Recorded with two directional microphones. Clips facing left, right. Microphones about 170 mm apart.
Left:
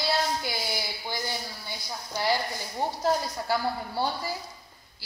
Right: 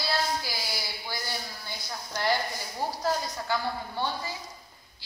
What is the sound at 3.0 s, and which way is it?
Speech, 35° left (ahead or behind).